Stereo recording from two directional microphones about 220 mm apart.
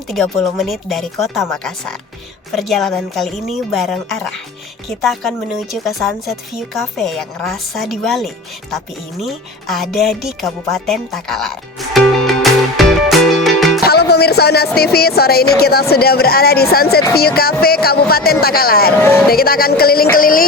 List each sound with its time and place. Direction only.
0.1 s speech: centre (ahead or behind)
11.9 s music: centre (ahead or behind)
13.8 s speech: 45° left (ahead or behind)